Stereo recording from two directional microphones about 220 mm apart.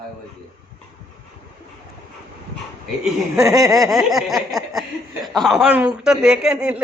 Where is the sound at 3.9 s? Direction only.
Centre (ahead or behind).